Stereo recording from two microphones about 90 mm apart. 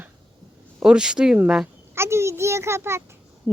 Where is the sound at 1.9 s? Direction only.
30° right (ahead or behind).